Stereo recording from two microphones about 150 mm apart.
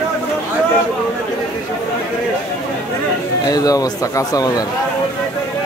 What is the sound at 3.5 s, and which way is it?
Speech, 25° left (ahead or behind).